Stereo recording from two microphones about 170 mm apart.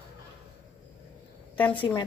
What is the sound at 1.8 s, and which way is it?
Speech, 25° left (ahead or behind).